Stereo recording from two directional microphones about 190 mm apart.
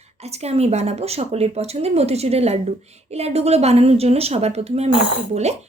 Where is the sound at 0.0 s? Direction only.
35° right (ahead or behind).